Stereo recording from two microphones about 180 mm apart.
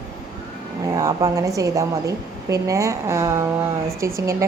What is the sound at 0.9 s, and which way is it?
Speech, 20° right (ahead or behind).